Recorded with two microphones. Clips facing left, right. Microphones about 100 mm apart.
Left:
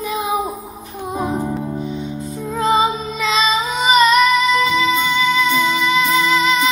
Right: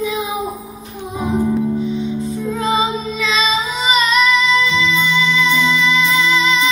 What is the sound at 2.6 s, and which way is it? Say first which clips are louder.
Female singing: left 3 dB; 50° left (ahead or behind).